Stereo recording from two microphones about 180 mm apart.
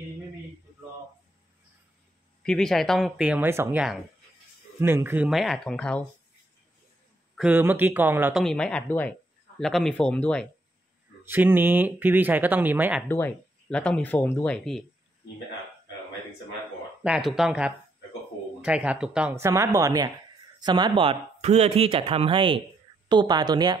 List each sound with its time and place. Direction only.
2.4 s speech: 5° left (ahead or behind)
7.3 s speech: 10° right (ahead or behind)
8.4 s speech: 5° left (ahead or behind)
11.2 s speech: 10° right (ahead or behind)
13.1 s speech: 10° left (ahead or behind)
17.0 s speech: centre (ahead or behind)
19.3 s speech: 15° right (ahead or behind)